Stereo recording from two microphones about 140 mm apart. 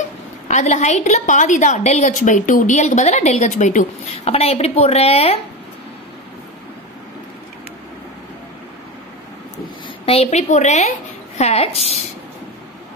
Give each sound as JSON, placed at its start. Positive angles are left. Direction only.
{"t": 0.5, "sound": "a woman's voice", "side_deg": 55}
{"t": 10.0, "sound": "a woman's voice", "side_deg": 45}